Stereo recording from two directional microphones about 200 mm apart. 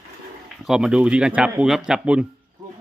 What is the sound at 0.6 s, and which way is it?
Speech, 5° right (ahead or behind).